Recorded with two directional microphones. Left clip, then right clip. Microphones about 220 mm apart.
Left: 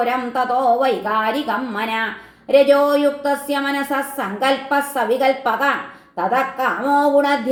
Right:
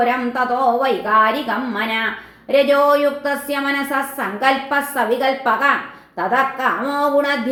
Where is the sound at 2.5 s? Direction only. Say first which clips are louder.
Left 1 dB; 35° left (ahead or behind).